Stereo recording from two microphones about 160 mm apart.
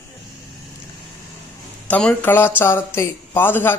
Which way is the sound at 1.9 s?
5° left (ahead or behind).